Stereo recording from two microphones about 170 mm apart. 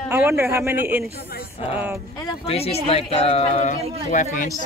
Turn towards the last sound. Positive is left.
turn(degrees=50)  # may be behind; listen again after turning